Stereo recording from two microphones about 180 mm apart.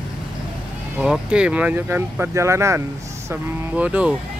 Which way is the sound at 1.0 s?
5° right (ahead or behind).